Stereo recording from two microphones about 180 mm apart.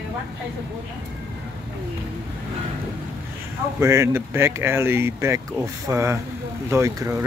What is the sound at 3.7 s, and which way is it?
Speech, 15° right (ahead or behind).